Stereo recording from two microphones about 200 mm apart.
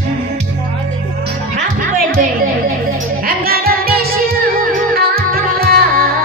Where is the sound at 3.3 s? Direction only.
50° right (ahead or behind).